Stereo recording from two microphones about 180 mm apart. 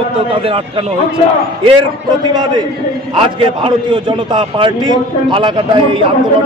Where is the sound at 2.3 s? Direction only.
25° right (ahead or behind).